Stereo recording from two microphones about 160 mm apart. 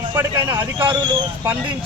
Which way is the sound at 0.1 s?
15° right (ahead or behind).